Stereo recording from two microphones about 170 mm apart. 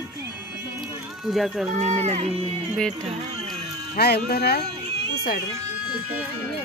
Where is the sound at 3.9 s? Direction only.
75° left (ahead or behind).